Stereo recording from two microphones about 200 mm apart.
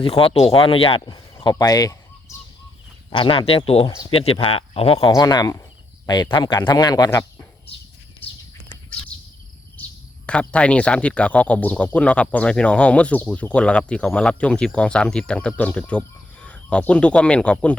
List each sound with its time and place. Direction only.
0.0 s speech: 30° left (ahead or behind)
3.1 s speech: 25° left (ahead or behind)
4.9 s speech: 20° left (ahead or behind)
10.2 s speech: 5° left (ahead or behind)